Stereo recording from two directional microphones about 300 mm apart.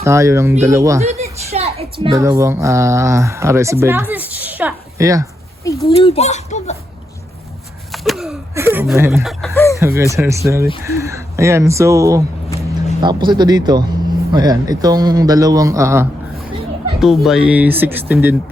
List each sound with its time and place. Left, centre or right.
0.0 s a man's voice: centre
1.0 s speech: right
5.9 s a child's voice: centre
7.9 s a sound: centre
9.8 s a man's voice: centre